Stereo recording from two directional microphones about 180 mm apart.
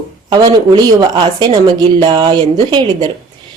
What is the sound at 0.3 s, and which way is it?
Speech, 25° right (ahead or behind).